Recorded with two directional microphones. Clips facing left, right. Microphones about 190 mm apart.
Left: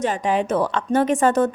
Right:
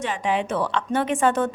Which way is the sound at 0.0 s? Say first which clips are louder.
Left 4 dB; 40° left (ahead or behind).